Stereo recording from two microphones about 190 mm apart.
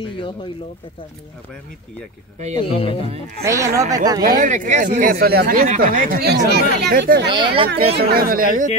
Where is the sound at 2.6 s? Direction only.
30° left (ahead or behind).